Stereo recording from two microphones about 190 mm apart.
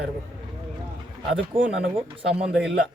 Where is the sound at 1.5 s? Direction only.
30° right (ahead or behind).